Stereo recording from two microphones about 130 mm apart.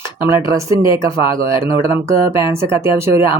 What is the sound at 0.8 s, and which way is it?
Speech, 40° left (ahead or behind).